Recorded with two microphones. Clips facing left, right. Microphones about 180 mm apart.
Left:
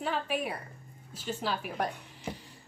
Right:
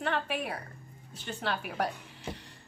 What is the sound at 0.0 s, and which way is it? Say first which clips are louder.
A woman's voice: even; centre (ahead or behind).